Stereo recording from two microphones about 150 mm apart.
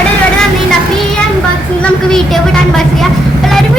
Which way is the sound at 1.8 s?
5° left (ahead or behind).